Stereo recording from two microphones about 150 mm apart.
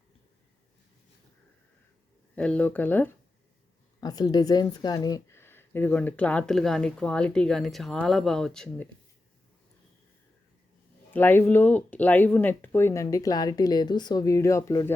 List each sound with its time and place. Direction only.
2.3 s a woman's voice: 10° left (ahead or behind)
4.0 s a woman's voice: 25° left (ahead or behind); by 8.9 s 5° left (ahead or behind)
11.1 s speech: 15° left (ahead or behind)